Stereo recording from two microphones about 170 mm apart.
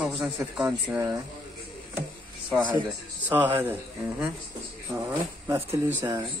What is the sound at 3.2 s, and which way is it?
Speech, 10° right (ahead or behind).